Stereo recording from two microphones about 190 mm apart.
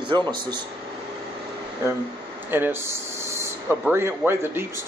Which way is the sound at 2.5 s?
10° right (ahead or behind).